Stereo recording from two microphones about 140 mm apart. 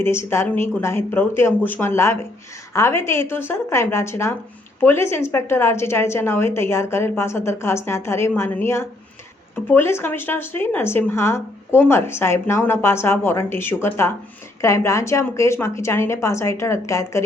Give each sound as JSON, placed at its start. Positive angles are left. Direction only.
{"t": 0.0, "sound": "a woman's voice", "side_deg": 15}